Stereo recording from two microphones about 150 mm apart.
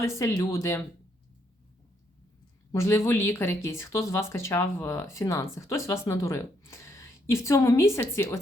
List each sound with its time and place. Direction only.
0.0 s speech: 20° left (ahead or behind)
2.7 s speech: 20° left (ahead or behind)